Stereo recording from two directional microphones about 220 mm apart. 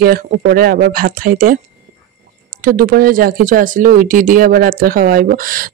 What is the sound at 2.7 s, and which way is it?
Speech, 40° right (ahead or behind).